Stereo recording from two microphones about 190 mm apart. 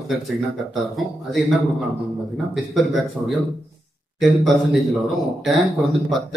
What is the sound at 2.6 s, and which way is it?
Speech, centre (ahead or behind).